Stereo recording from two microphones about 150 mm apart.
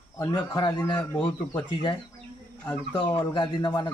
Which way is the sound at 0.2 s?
25° left (ahead or behind).